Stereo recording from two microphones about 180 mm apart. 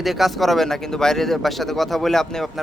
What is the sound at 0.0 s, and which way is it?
Speech, centre (ahead or behind).